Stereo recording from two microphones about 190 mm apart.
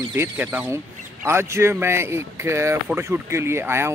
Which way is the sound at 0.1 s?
10° right (ahead or behind).